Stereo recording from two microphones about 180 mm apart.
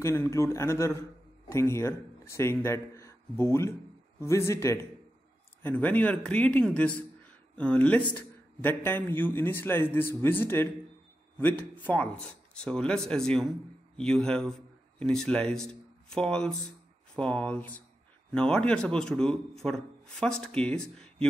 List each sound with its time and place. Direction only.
0.0 s a man's voice: 15° left (ahead or behind)